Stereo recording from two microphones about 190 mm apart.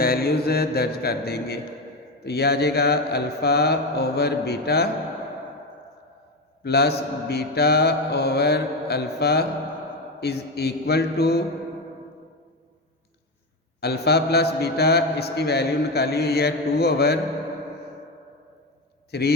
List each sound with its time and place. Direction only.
0.0 s a man's voice: 50° left (ahead or behind)
6.6 s a man's voice: 60° left (ahead or behind)
13.8 s a man's voice: 60° left (ahead or behind)
19.1 s a man's voice: 60° left (ahead or behind)